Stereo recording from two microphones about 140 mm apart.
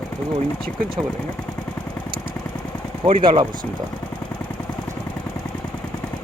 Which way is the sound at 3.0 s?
35° right (ahead or behind).